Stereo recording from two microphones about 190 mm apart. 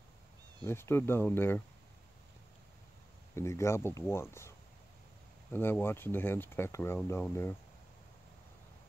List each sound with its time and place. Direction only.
0.7 s speech: 10° left (ahead or behind)
3.3 s speech: 15° left (ahead or behind)